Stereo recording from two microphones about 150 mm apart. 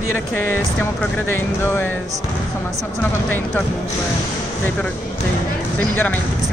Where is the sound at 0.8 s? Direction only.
15° left (ahead or behind).